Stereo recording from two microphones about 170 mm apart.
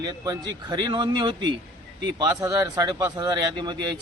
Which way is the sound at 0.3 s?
25° right (ahead or behind).